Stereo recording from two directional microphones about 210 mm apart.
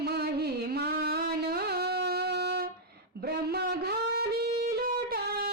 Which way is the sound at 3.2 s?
50° right (ahead or behind).